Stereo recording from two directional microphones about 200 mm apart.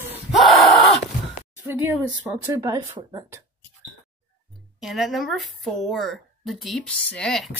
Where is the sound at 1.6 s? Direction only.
10° right (ahead or behind).